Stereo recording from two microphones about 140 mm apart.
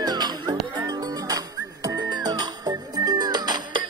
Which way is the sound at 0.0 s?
30° right (ahead or behind).